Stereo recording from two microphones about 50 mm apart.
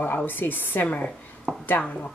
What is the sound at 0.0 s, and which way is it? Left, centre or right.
Speech, left.